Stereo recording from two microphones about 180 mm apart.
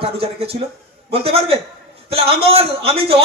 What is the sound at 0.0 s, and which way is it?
A man's voice, 30° right (ahead or behind).